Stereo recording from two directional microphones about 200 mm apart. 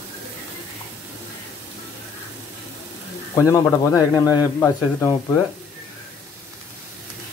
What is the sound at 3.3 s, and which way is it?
A man's voice, 15° left (ahead or behind).